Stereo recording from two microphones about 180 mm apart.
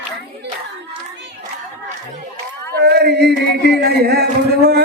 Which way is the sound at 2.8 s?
65° right (ahead or behind).